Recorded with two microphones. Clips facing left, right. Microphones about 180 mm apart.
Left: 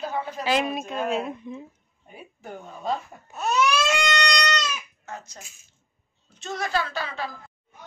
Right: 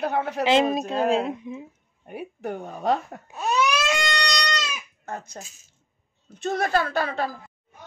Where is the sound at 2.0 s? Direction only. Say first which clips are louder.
Right 10 dB; 60° right (ahead or behind).